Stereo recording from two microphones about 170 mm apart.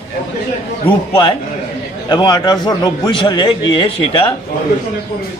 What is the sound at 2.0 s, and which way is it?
A man's voice, 25° left (ahead or behind).